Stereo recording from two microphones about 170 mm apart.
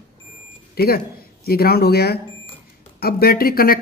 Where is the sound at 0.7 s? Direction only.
65° left (ahead or behind).